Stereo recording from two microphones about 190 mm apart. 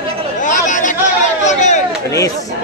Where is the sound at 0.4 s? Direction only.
40° left (ahead or behind).